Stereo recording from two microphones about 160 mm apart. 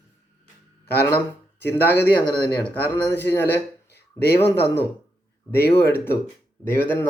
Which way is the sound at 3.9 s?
90° left.